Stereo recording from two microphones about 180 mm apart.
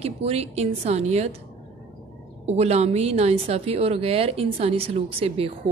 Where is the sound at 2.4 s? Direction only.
35° right (ahead or behind).